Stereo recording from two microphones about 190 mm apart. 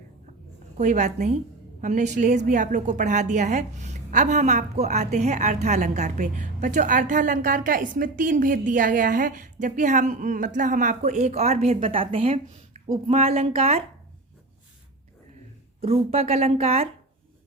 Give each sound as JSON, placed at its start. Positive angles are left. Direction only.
{"t": 0.8, "sound": "a woman's voice", "side_deg": -40}
{"t": 15.8, "sound": "a woman's voice", "side_deg": -30}